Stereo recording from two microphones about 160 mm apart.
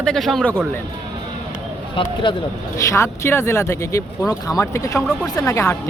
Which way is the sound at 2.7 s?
20° left (ahead or behind).